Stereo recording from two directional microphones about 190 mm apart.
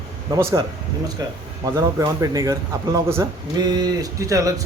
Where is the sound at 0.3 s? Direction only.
15° right (ahead or behind).